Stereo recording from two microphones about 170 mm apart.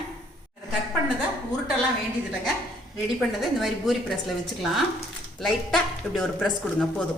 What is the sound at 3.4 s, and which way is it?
Speech, centre (ahead or behind).